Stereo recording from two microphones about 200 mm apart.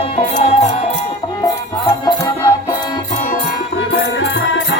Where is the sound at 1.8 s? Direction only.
15° left (ahead or behind).